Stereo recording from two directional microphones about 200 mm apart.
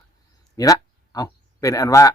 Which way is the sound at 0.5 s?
15° left (ahead or behind).